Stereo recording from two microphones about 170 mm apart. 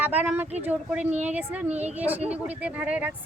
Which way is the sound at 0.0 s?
10° right (ahead or behind).